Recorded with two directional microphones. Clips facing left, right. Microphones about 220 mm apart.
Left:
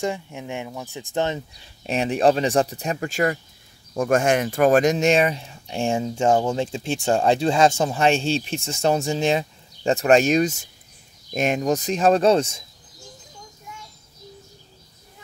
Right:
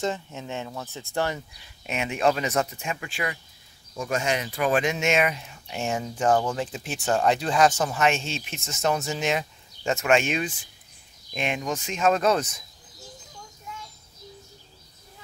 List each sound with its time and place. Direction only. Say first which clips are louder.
0.0 s speech: left 2 dB; 15° left (ahead or behind)
1.8 s speech: left 6 dB; 35° left (ahead or behind)